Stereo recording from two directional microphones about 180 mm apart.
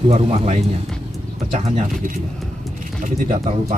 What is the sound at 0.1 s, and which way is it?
Speech, 35° right (ahead or behind).